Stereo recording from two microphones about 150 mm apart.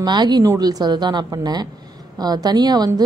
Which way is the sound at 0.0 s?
30° right (ahead or behind).